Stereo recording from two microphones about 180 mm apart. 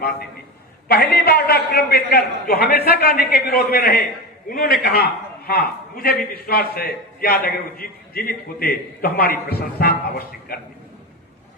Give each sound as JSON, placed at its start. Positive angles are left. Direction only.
{"t": 0.9, "sound": "a man's voice", "side_deg": 60}